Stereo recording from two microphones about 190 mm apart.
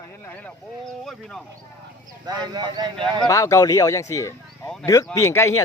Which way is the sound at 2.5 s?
20° right (ahead or behind).